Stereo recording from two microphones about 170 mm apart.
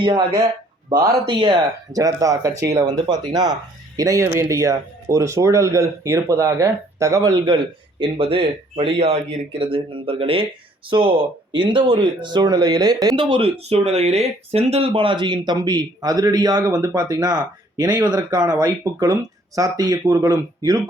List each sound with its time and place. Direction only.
0.0 s speech: 25° right (ahead or behind)